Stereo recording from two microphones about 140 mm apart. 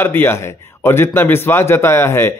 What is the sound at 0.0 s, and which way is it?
Speech, 15° left (ahead or behind).